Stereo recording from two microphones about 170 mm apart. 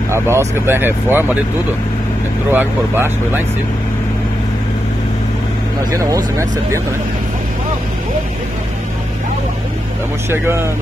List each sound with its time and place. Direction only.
0.1 s speech: 15° right (ahead or behind)
2.5 s speech: 10° right (ahead or behind)
5.9 s speech: 20° right (ahead or behind)
10.3 s speech: 15° right (ahead or behind)